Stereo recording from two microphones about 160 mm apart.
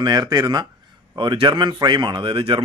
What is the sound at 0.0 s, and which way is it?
A man's voice, 25° right (ahead or behind).